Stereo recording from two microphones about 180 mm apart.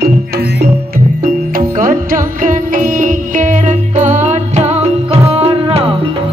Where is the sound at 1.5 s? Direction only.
50° right (ahead or behind); by 5.9 s 30° right (ahead or behind).